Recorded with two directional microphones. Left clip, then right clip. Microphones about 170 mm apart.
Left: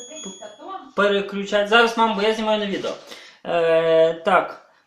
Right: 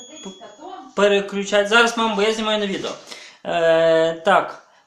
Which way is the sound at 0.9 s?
15° right (ahead or behind).